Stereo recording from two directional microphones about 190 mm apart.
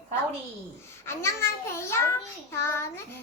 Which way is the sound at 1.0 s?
15° left (ahead or behind).